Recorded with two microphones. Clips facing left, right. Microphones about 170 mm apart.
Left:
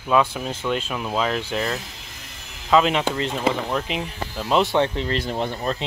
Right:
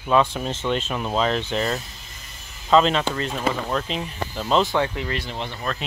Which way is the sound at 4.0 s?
Centre (ahead or behind).